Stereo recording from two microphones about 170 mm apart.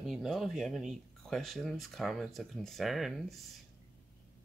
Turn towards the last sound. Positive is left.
turn(degrees=0)  # may be behind; listen again after turning